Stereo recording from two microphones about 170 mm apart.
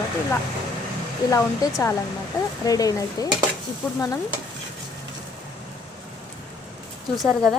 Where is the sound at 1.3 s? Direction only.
20° left (ahead or behind).